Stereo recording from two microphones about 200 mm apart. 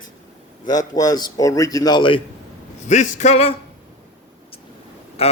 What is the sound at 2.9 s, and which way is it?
Speech, 35° left (ahead or behind).